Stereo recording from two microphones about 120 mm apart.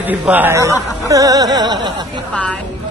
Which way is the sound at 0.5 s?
25° right (ahead or behind).